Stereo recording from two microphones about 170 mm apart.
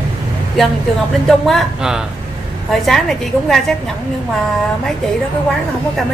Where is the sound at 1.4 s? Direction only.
Centre (ahead or behind).